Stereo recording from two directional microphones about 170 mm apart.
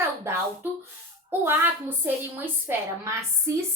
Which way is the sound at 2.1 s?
15° right (ahead or behind).